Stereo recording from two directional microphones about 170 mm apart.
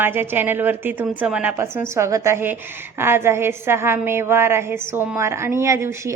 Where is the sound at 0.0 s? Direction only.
10° right (ahead or behind).